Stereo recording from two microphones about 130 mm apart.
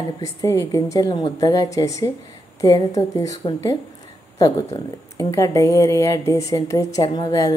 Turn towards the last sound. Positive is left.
turn(degrees=30)  # may be behind; listen again after turning